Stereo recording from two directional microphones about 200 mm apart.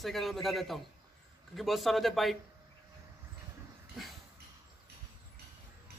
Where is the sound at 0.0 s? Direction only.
Centre (ahead or behind).